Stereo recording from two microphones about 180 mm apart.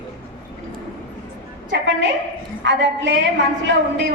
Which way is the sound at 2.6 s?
75° right (ahead or behind).